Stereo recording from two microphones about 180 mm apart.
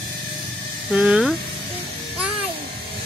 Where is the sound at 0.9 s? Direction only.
5° right (ahead or behind).